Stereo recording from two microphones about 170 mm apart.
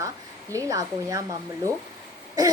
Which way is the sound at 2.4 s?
20° right (ahead or behind).